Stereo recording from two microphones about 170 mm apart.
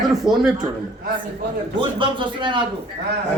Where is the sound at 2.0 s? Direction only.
30° right (ahead or behind).